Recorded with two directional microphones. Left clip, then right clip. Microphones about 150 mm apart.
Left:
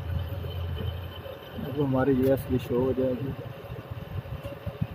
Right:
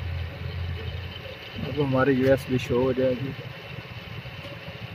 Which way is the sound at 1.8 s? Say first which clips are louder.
Right 3 dB; 15° right (ahead or behind).